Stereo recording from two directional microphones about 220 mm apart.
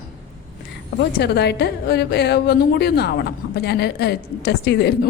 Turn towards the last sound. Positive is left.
turn(degrees=50)  # may be behind; listen again after turning